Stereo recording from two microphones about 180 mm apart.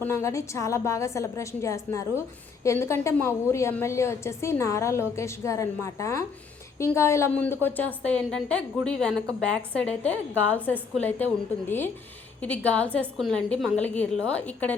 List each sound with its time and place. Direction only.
0.0 s a woman's voice: 15° left (ahead or behind)
12.4 s a woman's voice: 10° left (ahead or behind)